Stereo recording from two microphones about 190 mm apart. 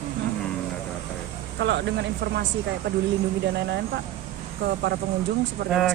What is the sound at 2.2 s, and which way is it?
Speech, 60° right (ahead or behind).